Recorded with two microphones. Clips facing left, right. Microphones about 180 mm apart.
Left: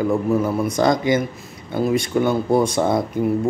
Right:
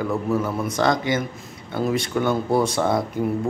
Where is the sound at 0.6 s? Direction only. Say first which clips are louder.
Left 3 dB; 15° left (ahead or behind).